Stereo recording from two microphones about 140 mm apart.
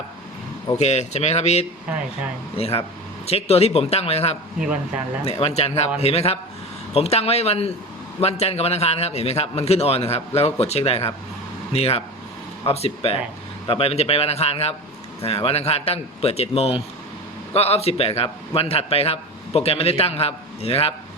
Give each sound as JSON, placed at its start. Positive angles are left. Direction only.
{"t": 0.8, "sound": "a man's voice", "side_deg": 55}
{"t": 1.9, "sound": "speech", "side_deg": -10}
{"t": 2.6, "sound": "a man's voice", "side_deg": 45}